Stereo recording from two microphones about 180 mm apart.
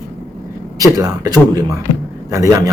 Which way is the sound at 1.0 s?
20° right (ahead or behind).